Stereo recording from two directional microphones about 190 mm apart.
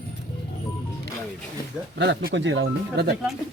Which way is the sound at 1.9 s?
65° right (ahead or behind).